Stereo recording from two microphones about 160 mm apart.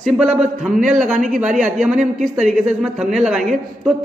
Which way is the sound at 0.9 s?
50° right (ahead or behind).